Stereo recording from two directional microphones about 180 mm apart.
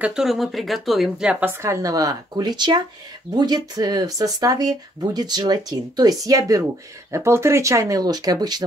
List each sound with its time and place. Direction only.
0.0 s a woman's voice: 5° right (ahead or behind); by 8.6 s 20° right (ahead or behind)